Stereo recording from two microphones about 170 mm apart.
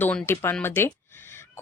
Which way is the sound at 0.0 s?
10° left (ahead or behind).